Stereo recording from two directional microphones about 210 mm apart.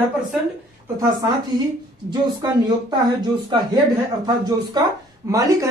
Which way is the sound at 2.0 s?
20° right (ahead or behind).